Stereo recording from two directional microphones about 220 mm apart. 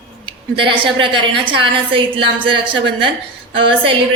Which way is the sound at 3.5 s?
25° right (ahead or behind).